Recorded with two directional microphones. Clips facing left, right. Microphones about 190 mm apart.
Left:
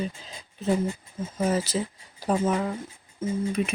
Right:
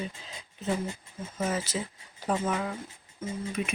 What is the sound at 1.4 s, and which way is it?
Speech, 35° left (ahead or behind).